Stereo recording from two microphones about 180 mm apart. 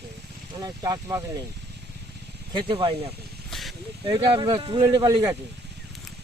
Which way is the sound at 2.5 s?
25° right (ahead or behind).